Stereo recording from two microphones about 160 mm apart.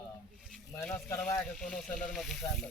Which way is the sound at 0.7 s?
10° left (ahead or behind).